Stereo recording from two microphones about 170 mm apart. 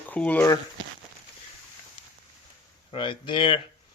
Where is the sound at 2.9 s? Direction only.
30° left (ahead or behind).